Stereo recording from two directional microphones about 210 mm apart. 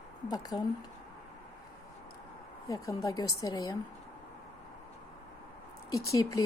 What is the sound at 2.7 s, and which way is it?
Speech, 15° left (ahead or behind).